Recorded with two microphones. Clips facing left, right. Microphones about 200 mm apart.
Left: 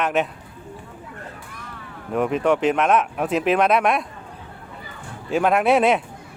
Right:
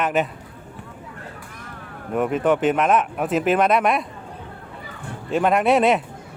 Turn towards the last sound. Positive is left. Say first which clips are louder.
# even
turn(degrees=0)  # may be behind; listen again after turning